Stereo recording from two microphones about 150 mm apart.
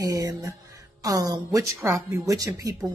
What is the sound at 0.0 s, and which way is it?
Speech, 25° right (ahead or behind).